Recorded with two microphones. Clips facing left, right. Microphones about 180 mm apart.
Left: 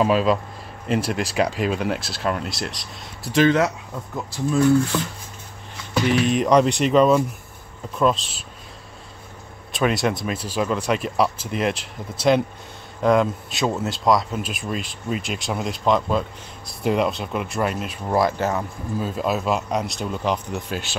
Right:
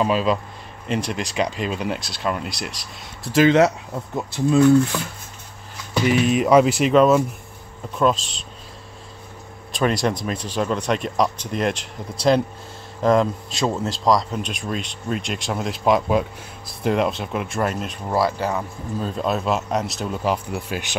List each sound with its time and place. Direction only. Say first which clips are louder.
0.0 s speech: left 1 dB; centre (ahead or behind)
3.4 s speech: right 5 dB; 25° right (ahead or behind)
6.0 s speech: right 2 dB; 5° right (ahead or behind)
9.7 s speech: even; centre (ahead or behind)
16.6 s speech: even; centre (ahead or behind)